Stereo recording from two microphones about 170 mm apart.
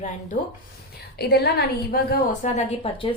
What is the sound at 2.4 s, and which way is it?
Speech, 45° left (ahead or behind).